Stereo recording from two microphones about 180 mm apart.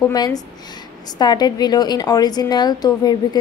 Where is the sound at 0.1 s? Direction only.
20° left (ahead or behind).